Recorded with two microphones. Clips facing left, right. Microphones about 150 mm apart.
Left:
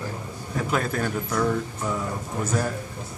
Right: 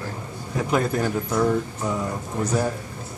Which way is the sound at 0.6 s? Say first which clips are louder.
Right 4 dB; 15° right (ahead or behind).